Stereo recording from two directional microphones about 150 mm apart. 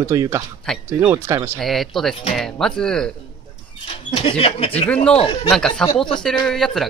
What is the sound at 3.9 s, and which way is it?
Speech, 40° left (ahead or behind).